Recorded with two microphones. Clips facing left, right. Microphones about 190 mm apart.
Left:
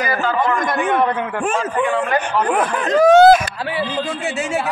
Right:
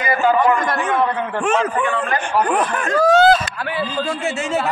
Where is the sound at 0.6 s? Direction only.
15° left (ahead or behind).